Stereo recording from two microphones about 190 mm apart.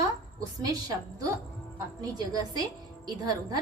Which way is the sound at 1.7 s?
20° right (ahead or behind).